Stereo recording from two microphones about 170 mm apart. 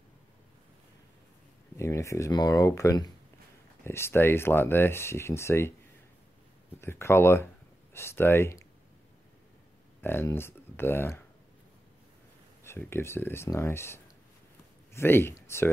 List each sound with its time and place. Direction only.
1.8 s speech: 15° left (ahead or behind)
6.8 s speech: 15° left (ahead or behind)
10.0 s speech: 15° left (ahead or behind)
12.6 s speech: 15° left (ahead or behind)